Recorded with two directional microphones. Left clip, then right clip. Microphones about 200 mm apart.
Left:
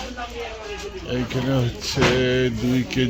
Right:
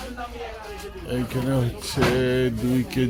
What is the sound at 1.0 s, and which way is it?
Speech, centre (ahead or behind).